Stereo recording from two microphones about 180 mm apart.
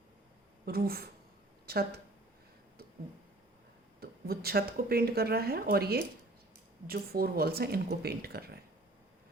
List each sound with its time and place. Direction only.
0.6 s speech: 55° right (ahead or behind)
4.0 s speech: 60° right (ahead or behind)